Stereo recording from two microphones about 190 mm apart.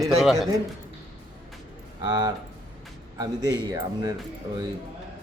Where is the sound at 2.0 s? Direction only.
20° right (ahead or behind).